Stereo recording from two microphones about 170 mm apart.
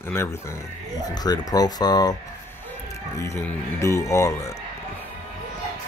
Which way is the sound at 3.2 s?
15° left (ahead or behind).